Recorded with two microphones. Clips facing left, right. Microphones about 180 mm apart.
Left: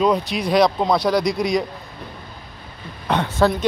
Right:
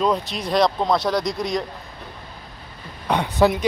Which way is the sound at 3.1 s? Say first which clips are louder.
Even; 15° right (ahead or behind).